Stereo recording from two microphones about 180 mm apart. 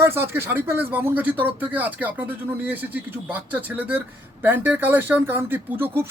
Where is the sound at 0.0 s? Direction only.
10° right (ahead or behind).